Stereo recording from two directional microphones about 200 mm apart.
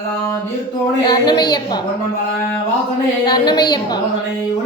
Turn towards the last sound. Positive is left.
turn(degrees=20)  # may be behind; listen again after turning